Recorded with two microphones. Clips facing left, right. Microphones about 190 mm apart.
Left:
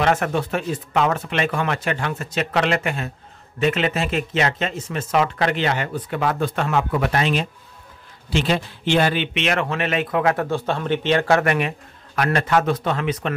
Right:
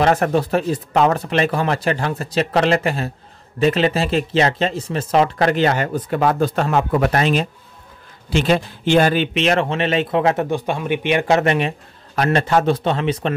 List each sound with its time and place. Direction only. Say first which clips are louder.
0.0 s speech: right 4 dB; 35° right (ahead or behind)